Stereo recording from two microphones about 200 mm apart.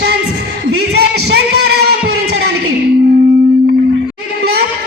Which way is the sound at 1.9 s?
55° right (ahead or behind).